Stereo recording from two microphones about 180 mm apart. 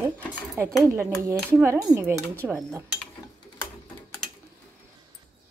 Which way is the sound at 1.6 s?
15° right (ahead or behind).